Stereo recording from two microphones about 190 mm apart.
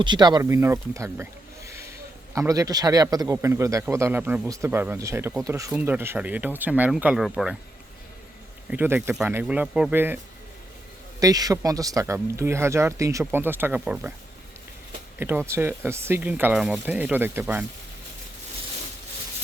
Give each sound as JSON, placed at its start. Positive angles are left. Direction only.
{"t": 0.0, "sound": "a man's voice", "side_deg": -20}
{"t": 8.7, "sound": "speech", "side_deg": -10}
{"t": 11.2, "sound": "speech", "side_deg": -20}
{"t": 15.2, "sound": "speech", "side_deg": -10}